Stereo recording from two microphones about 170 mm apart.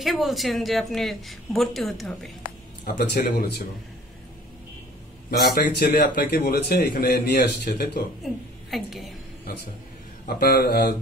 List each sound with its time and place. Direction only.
0.0 s speech: centre (ahead or behind)
2.8 s a man's voice: 50° left (ahead or behind)
5.4 s a man's voice: 65° left (ahead or behind)
8.2 s a woman's voice: centre (ahead or behind)
10.2 s speech: 60° left (ahead or behind)